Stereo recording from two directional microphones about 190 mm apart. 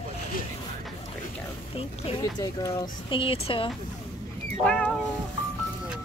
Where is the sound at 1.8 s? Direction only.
30° left (ahead or behind).